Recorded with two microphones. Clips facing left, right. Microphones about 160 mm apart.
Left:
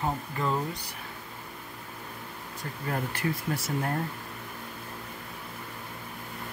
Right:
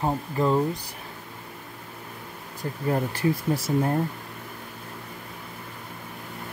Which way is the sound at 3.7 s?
20° right (ahead or behind).